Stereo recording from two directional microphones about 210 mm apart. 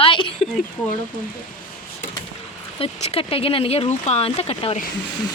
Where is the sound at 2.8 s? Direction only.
25° left (ahead or behind).